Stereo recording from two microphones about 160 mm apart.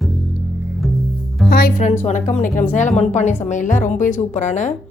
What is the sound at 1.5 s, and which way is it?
Music, 80° left.